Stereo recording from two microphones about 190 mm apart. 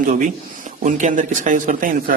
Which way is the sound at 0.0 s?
40° right (ahead or behind).